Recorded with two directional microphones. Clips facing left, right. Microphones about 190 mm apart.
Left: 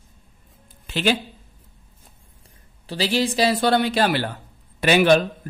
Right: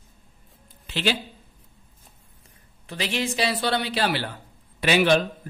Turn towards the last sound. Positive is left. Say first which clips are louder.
# left 4 dB
turn(degrees=50)  # may be behind; listen again after turning